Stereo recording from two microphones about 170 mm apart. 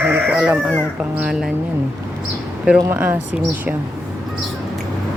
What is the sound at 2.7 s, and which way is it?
Speech, 15° right (ahead or behind).